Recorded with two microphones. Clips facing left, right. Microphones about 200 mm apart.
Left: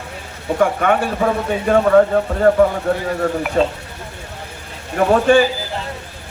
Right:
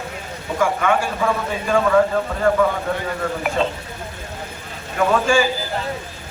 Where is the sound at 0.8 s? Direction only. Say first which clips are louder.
Left 3 dB; 55° left (ahead or behind).